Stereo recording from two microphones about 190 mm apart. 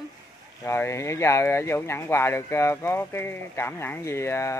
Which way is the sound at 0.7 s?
15° left (ahead or behind).